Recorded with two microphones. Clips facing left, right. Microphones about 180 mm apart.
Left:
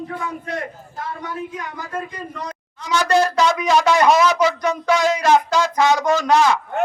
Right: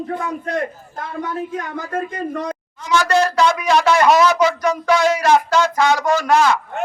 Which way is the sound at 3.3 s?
20° left (ahead or behind).